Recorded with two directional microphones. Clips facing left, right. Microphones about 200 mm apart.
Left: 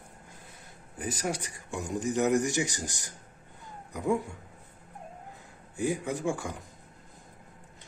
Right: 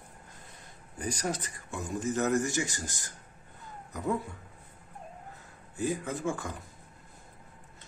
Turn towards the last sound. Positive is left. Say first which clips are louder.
# left 2 dB
turn(degrees=15)  # may be behind; listen again after turning